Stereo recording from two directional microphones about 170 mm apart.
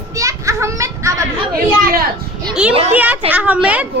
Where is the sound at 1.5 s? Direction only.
60° right (ahead or behind).